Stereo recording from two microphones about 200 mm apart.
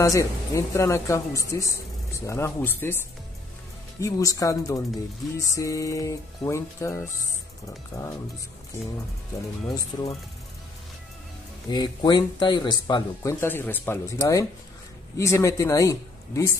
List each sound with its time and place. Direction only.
0.0 s speech: 15° left (ahead or behind)
4.0 s speech: 15° left (ahead or behind)
7.9 s speech: centre (ahead or behind)
9.9 s speech: 20° left (ahead or behind)
11.7 s speech: 20° left (ahead or behind)